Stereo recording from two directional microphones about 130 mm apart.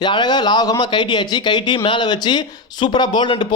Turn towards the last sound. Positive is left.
turn(degrees=40)  # may be behind; listen again after turning